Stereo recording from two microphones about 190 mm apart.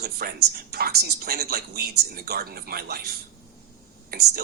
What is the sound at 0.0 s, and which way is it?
Speech, 55° right (ahead or behind).